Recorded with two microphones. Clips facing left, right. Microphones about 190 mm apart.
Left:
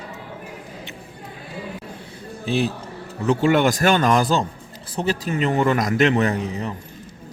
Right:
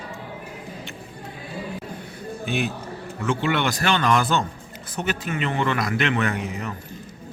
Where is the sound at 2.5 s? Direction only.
35° left (ahead or behind).